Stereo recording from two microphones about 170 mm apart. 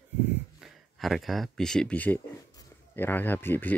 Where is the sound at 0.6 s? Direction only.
Centre (ahead or behind).